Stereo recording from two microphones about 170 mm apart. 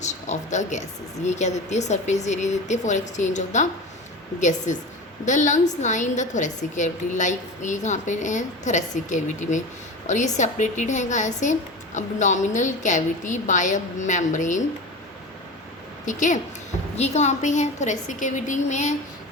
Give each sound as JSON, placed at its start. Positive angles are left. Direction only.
{"t": 0.0, "sound": "a woman's voice", "side_deg": 45}
{"t": 16.0, "sound": "a woman's voice", "side_deg": 45}